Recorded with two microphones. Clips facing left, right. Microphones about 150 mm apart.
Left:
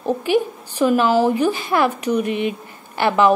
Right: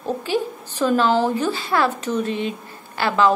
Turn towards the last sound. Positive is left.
turn(degrees=15)  # may be behind; listen again after turning